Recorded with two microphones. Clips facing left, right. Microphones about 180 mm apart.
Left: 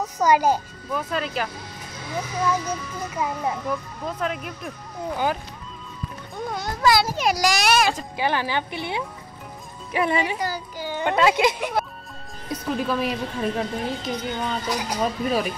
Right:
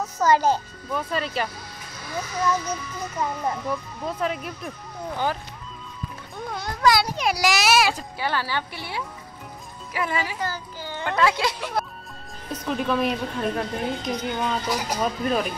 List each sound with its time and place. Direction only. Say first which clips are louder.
0.0 s a child's voice: left 1 dB; 15° left (ahead or behind)
0.8 s a child's voice: even; centre (ahead or behind)
2.0 s a child's voice: left 1 dB; 15° left (ahead or behind)
5.1 s a child's voice: left 2 dB; 10° left (ahead or behind)
6.8 s a child's voice: left 1 dB; 5° left (ahead or behind)
8.2 s speech: left 5 dB; 15° left (ahead or behind)
12.6 s a child's voice: right 1 dB; centre (ahead or behind)